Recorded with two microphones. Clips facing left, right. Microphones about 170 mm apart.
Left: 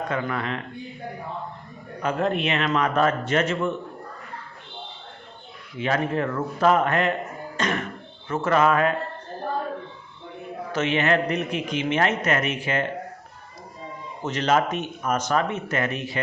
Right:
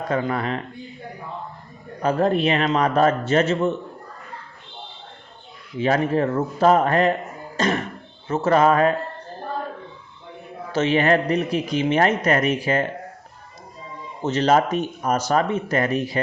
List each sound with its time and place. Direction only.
0.1 s speech: 30° right (ahead or behind)
2.0 s speech: 35° right (ahead or behind)
5.8 s speech: 30° right (ahead or behind)
7.5 s throat clearing: 35° right (ahead or behind)
8.3 s speech: 30° right (ahead or behind)
10.8 s speech: 35° right (ahead or behind)
14.3 s speech: 30° right (ahead or behind)